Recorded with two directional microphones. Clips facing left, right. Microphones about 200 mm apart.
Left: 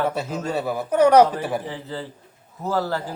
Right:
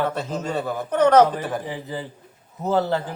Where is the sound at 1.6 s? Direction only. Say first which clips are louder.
Right 1 dB; 15° right (ahead or behind).